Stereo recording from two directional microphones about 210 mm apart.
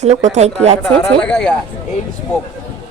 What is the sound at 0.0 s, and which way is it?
Speech, 35° right (ahead or behind).